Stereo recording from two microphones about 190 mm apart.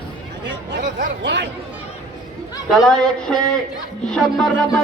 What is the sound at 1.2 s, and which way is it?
Speech, 65° right (ahead or behind).